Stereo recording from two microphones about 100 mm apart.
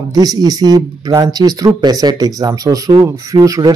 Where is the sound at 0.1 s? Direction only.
40° right (ahead or behind).